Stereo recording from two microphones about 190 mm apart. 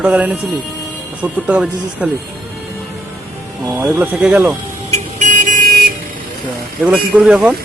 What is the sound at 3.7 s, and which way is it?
Speech, 10° right (ahead or behind).